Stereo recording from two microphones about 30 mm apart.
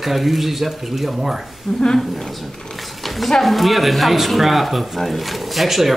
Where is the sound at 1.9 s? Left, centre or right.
Centre.